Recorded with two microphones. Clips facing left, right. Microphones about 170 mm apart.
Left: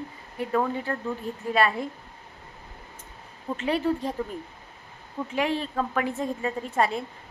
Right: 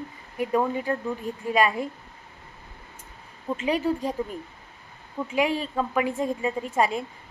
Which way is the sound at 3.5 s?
10° right (ahead or behind).